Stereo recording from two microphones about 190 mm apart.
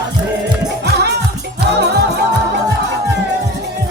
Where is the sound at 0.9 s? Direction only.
60° right (ahead or behind).